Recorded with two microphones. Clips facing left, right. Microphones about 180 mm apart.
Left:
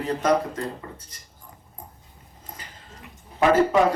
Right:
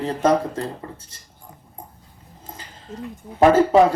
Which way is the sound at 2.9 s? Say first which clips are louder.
Right 17 dB; 60° right (ahead or behind).